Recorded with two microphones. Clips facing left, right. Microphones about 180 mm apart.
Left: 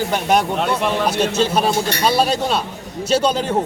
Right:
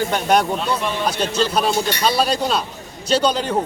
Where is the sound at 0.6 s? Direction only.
75° left (ahead or behind).